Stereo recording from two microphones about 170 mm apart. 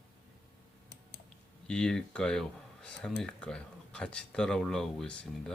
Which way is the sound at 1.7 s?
5° left (ahead or behind).